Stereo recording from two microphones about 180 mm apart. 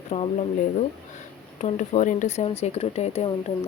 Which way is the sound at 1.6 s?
40° left (ahead or behind).